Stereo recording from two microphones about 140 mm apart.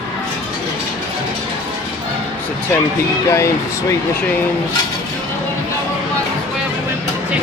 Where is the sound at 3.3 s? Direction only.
20° left (ahead or behind).